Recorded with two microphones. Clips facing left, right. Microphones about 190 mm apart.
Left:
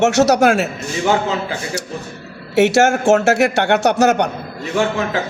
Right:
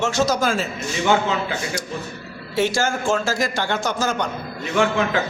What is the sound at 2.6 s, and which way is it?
A man's voice, 70° left (ahead or behind).